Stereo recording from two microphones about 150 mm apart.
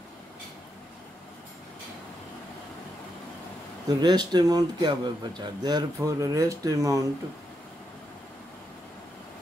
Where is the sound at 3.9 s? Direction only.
30° right (ahead or behind).